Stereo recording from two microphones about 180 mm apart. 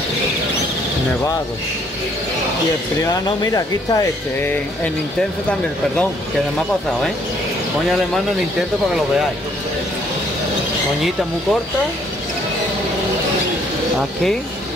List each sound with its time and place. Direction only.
3.1 s speech: 20° left (ahead or behind)